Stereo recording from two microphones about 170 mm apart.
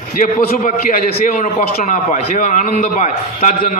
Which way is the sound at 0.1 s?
55° left (ahead or behind).